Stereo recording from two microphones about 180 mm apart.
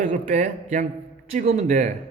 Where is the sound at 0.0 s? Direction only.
45° right (ahead or behind).